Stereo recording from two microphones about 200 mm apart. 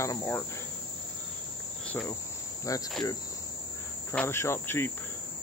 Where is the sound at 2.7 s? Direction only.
15° left (ahead or behind).